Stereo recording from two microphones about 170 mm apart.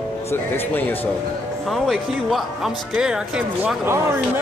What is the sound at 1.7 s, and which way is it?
Speech, centre (ahead or behind).